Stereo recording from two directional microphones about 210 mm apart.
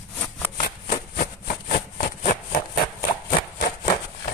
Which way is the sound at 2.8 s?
20° left (ahead or behind).